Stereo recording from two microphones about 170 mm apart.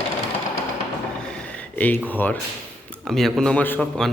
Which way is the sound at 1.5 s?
10° left (ahead or behind).